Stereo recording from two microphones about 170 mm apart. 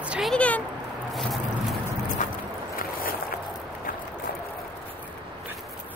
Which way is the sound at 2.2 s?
45° left (ahead or behind).